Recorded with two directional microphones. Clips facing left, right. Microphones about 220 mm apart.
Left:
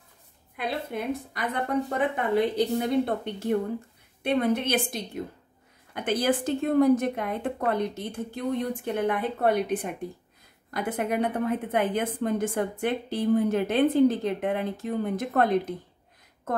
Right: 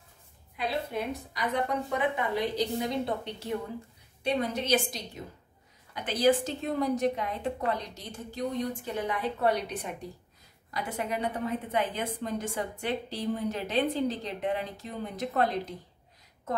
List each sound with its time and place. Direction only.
0.6 s a woman's voice: 55° left (ahead or behind)